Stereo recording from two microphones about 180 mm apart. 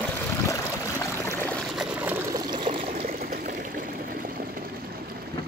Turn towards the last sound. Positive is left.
turn(degrees=-50)  # may be behind; listen again after turning